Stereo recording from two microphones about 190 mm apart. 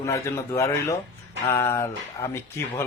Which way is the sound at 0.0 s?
15° left (ahead or behind).